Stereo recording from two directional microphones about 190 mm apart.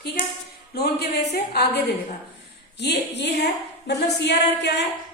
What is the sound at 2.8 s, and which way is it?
Speech, 60° left (ahead or behind).